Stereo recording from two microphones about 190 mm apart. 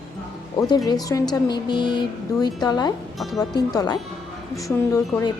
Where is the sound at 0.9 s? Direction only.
20° left (ahead or behind).